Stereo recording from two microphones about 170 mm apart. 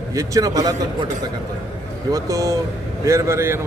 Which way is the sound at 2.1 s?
20° right (ahead or behind).